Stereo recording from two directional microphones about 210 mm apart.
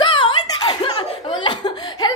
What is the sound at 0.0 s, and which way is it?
Chuckle, 25° left (ahead or behind).